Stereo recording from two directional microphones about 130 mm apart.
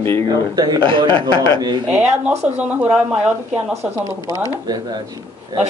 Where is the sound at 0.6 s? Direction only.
35° right (ahead or behind).